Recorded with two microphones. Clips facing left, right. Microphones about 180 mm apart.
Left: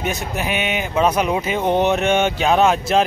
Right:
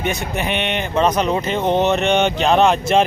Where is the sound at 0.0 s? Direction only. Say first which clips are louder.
Right 1 dB; centre (ahead or behind).